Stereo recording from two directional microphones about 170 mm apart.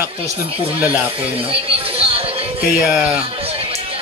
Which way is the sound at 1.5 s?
35° right (ahead or behind).